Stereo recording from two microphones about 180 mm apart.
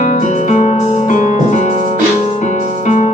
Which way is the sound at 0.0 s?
45° left (ahead or behind).